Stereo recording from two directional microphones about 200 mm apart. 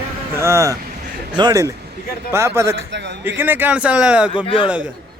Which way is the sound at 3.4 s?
10° right (ahead or behind).